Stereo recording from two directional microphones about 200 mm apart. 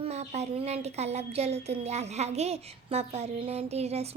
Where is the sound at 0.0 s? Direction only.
35° right (ahead or behind).